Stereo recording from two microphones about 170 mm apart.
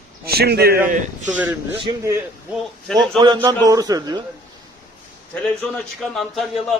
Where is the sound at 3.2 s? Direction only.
25° right (ahead or behind).